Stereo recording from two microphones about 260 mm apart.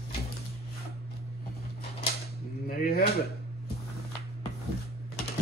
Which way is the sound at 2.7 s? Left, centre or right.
Left.